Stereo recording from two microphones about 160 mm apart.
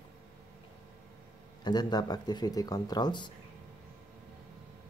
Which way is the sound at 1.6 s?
25° left (ahead or behind).